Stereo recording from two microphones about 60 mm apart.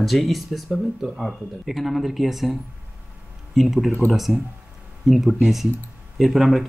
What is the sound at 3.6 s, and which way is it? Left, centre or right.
Speech, centre.